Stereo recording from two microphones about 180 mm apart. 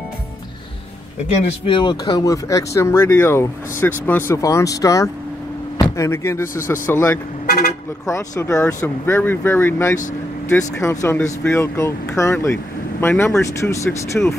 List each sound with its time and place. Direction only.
1.3 s speech: 30° left (ahead or behind)
14.2 s speech: 5° left (ahead or behind)